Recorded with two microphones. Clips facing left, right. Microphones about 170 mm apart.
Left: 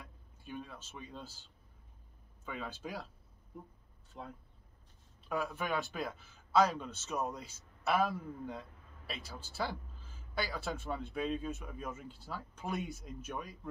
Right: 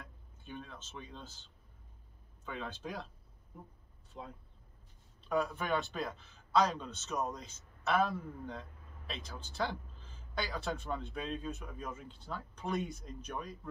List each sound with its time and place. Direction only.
0.0 s a man's voice: 10° left (ahead or behind)
4.1 s a man's voice: 5° left (ahead or behind)